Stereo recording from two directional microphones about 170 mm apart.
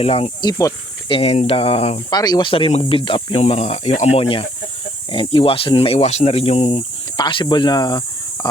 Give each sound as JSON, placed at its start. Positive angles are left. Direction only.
{"t": 0.0, "sound": "speech", "side_deg": 35}
{"t": 2.0, "sound": "speech", "side_deg": 25}